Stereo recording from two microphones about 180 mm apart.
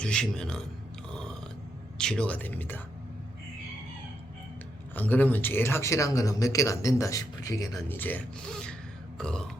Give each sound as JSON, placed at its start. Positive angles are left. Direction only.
{"t": 0.0, "sound": "speech", "side_deg": 5}
{"t": 1.1, "sound": "a sound", "side_deg": 5}
{"t": 2.0, "sound": "speech", "side_deg": 5}
{"t": 4.9, "sound": "speech", "side_deg": 10}